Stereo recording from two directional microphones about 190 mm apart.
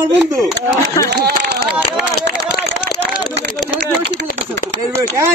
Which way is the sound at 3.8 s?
65° right (ahead or behind).